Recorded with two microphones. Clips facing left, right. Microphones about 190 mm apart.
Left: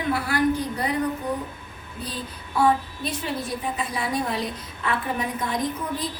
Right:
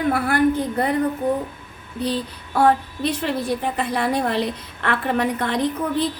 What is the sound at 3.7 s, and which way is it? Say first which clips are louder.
A woman's voice: right 5 dB; 60° right (ahead or behind).